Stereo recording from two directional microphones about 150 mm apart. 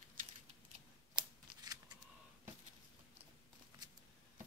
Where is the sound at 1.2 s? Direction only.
25° right (ahead or behind).